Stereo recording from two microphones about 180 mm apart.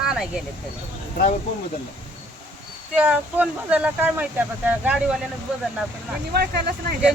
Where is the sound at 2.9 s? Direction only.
10° right (ahead or behind).